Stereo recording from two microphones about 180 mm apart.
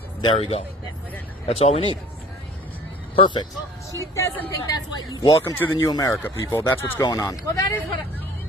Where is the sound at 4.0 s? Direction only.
15° left (ahead or behind).